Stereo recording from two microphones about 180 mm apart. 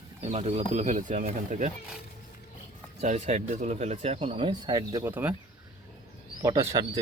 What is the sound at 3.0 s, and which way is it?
Speech, 40° right (ahead or behind).